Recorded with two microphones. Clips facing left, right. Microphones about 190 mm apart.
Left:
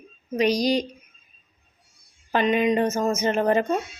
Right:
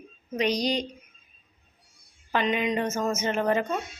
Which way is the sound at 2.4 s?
45° left (ahead or behind).